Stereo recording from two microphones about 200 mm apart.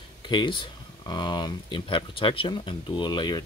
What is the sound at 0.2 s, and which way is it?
Speech, 20° left (ahead or behind).